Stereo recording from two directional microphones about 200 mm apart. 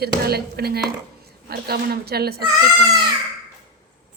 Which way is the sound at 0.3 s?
50° right (ahead or behind).